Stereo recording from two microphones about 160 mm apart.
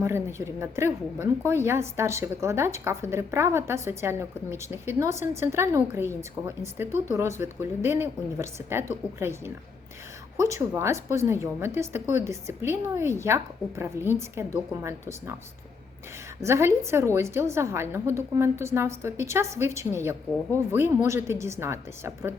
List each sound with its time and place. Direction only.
0.0 s a woman's voice: 15° right (ahead or behind)
16.4 s a woman's voice: 15° right (ahead or behind)